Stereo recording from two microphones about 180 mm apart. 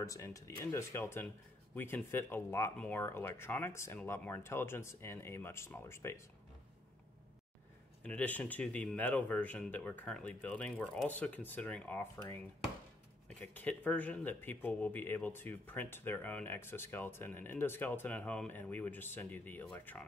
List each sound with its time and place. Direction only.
0.0 s speech: 20° left (ahead or behind)
8.0 s speech: 10° left (ahead or behind)